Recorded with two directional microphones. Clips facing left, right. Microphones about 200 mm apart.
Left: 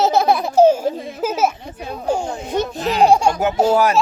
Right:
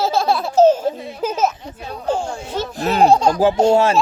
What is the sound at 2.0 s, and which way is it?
Baby laughter, 15° left (ahead or behind).